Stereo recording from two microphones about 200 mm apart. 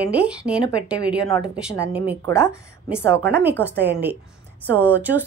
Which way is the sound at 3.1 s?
55° right (ahead or behind).